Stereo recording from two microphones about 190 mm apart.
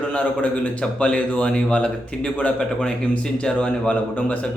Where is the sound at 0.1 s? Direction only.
5° left (ahead or behind).